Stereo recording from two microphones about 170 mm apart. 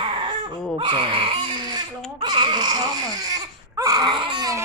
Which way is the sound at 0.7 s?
30° right (ahead or behind).